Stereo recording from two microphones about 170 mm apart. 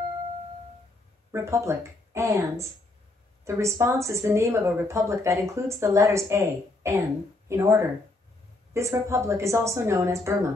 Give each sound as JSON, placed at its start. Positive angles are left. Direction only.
{"t": 1.3, "sound": "speech", "side_deg": -15}